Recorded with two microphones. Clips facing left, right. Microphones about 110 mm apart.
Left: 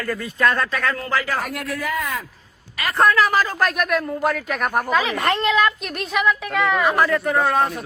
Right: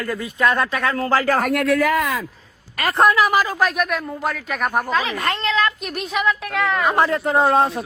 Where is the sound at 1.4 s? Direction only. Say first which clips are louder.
Right 9 dB; 70° right (ahead or behind); by 2.1 s 90° right.